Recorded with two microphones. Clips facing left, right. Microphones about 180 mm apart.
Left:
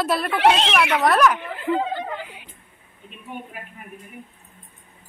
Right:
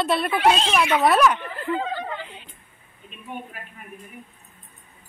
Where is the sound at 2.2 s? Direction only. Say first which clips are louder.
Left 1 dB; 10° left (ahead or behind).